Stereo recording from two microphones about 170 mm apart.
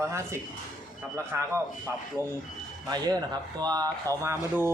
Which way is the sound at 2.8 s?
25° right (ahead or behind).